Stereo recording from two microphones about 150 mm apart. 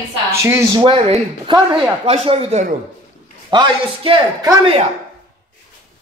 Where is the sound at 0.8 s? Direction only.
30° right (ahead or behind).